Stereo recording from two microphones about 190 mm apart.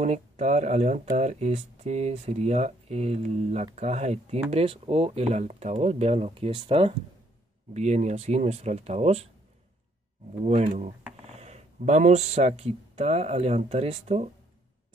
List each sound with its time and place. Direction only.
0.0 s speech: 35° right (ahead or behind)
10.4 s speech: 35° right (ahead or behind)